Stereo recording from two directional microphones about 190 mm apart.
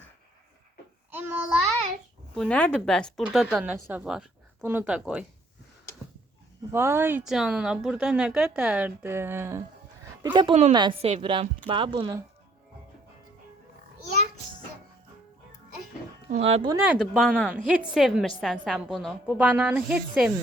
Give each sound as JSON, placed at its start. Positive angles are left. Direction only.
{"t": 1.1, "sound": "child singing", "side_deg": -10}
{"t": 2.3, "sound": "speech", "side_deg": 5}
{"t": 6.7, "sound": "speech", "side_deg": -15}
{"t": 10.2, "sound": "speech", "side_deg": -25}
{"t": 10.5, "sound": "speech", "side_deg": -35}
{"t": 10.8, "sound": "speech", "side_deg": -25}
{"t": 16.3, "sound": "speech", "side_deg": -30}
{"t": 16.8, "sound": "speech", "side_deg": -5}